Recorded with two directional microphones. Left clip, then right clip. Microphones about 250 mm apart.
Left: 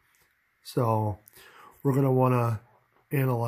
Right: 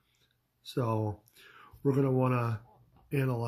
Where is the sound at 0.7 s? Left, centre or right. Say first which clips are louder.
Left 6 dB; left.